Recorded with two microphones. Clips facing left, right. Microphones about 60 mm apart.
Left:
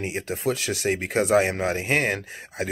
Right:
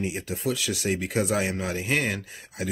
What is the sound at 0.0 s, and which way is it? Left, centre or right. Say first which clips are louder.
Speech: left 2 dB; left.